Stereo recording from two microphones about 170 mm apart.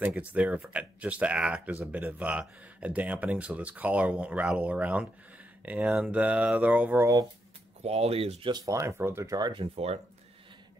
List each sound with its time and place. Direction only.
0.0 s speech: 10° right (ahead or behind)
7.8 s speech: 35° right (ahead or behind)